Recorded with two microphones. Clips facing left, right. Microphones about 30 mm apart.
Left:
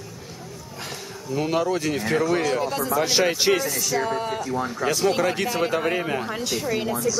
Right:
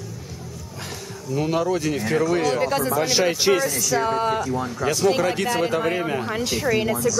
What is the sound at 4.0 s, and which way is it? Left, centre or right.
Speech, right.